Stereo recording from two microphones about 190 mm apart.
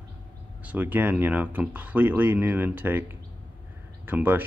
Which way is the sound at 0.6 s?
10° right (ahead or behind).